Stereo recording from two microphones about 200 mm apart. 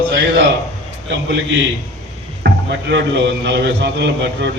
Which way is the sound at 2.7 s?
60° right (ahead or behind).